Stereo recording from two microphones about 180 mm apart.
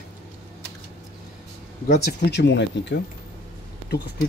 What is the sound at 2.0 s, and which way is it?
Speech, 65° left (ahead or behind).